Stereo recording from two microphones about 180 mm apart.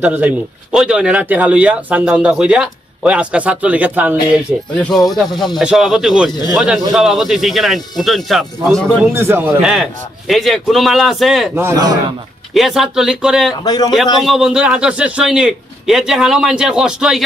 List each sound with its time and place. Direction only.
0.0 s speech: 10° right (ahead or behind)
4.7 s a man's voice: 5° left (ahead or behind)
9.1 s a man's voice: 10° right (ahead or behind)
11.5 s speech: 15° right (ahead or behind)
12.5 s a man's voice: centre (ahead or behind)
13.7 s a man's voice: 20° left (ahead or behind)
14.2 s a man's voice: 5° right (ahead or behind)